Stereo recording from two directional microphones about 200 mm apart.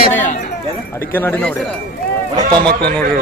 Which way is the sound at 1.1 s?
10° left (ahead or behind).